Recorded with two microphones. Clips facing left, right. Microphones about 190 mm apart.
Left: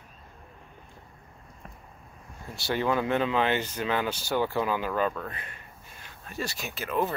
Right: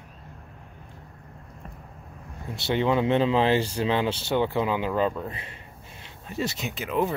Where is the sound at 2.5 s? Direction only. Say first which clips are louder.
Right 3 dB; 20° right (ahead or behind).